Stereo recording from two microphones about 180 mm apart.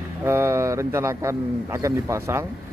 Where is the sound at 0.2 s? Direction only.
15° right (ahead or behind).